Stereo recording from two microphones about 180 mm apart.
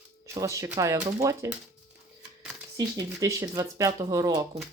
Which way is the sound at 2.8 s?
20° right (ahead or behind).